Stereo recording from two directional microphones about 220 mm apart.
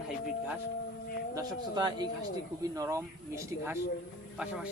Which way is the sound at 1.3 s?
20° right (ahead or behind).